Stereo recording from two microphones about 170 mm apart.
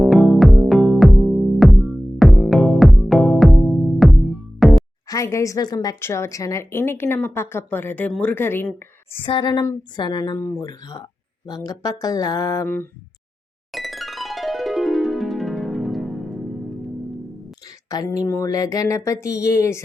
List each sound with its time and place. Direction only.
0.0 s music: centre (ahead or behind)
5.0 s speech: 20° left (ahead or behind)
9.1 s speech: 30° left (ahead or behind)
10.3 s speech: 10° left (ahead or behind)
10.6 s speech: 25° left (ahead or behind)
13.7 s music: centre (ahead or behind)
17.8 s speech: 20° left (ahead or behind)